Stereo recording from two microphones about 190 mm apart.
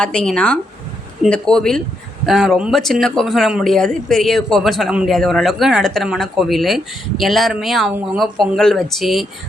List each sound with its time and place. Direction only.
0.0 s speech: 5° left (ahead or behind)